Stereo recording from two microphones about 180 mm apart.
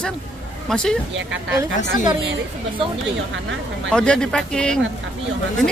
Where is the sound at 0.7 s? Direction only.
5° left (ahead or behind).